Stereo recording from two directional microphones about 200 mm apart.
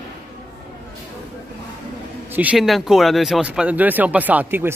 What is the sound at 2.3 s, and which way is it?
Speech, 10° right (ahead or behind).